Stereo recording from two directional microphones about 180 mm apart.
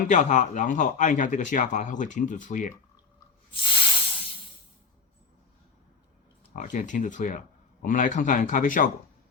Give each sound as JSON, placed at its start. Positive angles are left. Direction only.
{"t": 0.1, "sound": "speech", "side_deg": 45}
{"t": 3.5, "sound": "snake", "side_deg": 30}
{"t": 6.5, "sound": "speech", "side_deg": 45}